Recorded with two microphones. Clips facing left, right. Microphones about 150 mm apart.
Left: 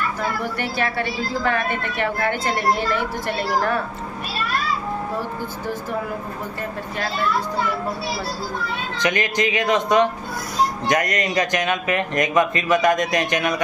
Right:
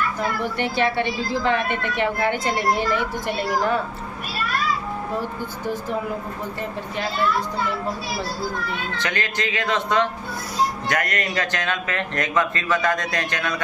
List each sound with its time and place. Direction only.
0.6 s a woman's voice: 20° right (ahead or behind)
8.9 s speech: 15° left (ahead or behind)